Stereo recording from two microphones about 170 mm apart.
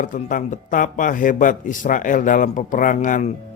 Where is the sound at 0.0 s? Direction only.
50° left (ahead or behind).